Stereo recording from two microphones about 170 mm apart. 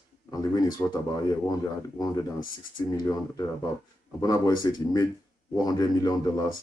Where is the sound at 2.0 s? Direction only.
20° left (ahead or behind).